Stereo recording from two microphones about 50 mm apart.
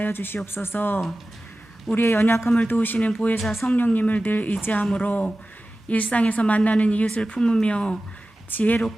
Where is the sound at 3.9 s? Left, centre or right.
Left.